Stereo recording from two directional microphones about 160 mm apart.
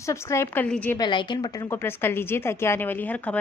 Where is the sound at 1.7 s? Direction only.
15° left (ahead or behind).